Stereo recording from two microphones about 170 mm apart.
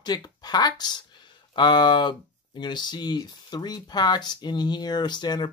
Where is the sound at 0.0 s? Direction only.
25° left (ahead or behind).